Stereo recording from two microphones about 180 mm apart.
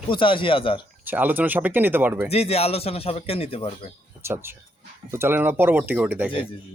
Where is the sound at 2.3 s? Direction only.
35° left (ahead or behind).